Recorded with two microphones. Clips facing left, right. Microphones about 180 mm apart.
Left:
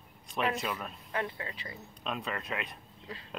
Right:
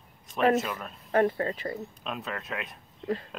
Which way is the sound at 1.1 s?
45° right (ahead or behind).